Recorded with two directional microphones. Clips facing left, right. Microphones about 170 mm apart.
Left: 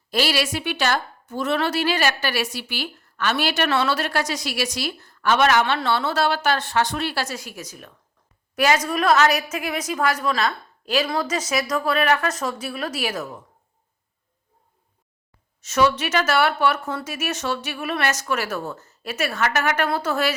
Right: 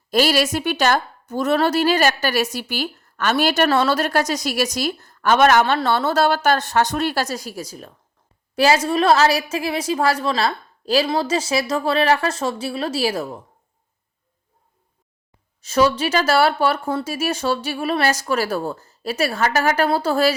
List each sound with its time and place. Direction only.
0.1 s a woman's voice: 45° right (ahead or behind)
15.6 s speech: 30° right (ahead or behind)